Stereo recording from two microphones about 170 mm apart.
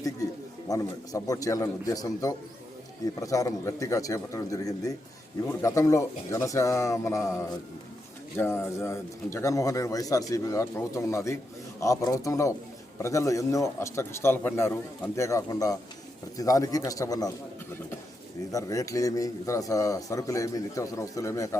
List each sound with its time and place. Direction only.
0.7 s speech: 20° left (ahead or behind)
18.5 s speech: 20° left (ahead or behind)